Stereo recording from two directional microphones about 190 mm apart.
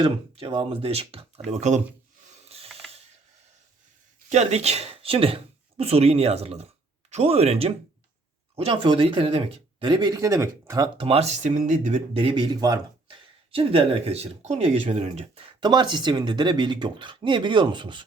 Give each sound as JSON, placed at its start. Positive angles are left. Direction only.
{"t": 0.0, "sound": "speech", "side_deg": -30}
{"t": 2.4, "sound": "ratchet", "side_deg": -30}
{"t": 4.3, "sound": "speech", "side_deg": -35}
{"t": 13.5, "sound": "speech", "side_deg": -30}